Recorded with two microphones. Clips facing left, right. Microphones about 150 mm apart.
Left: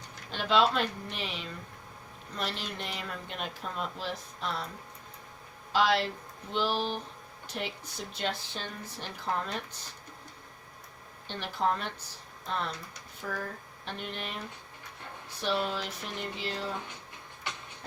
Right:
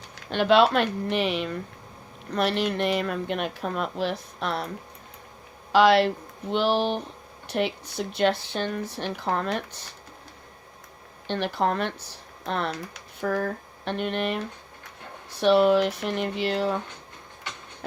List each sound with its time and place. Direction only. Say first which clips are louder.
0.3 s speech: right 7 dB; 70° right (ahead or behind)
5.7 s speech: right 9 dB; 70° right (ahead or behind)
11.3 s speech: right 5 dB; 70° right (ahead or behind)